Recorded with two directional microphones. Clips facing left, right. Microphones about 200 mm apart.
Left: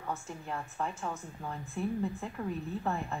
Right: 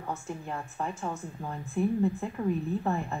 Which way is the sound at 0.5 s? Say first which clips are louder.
Even; 5° right (ahead or behind).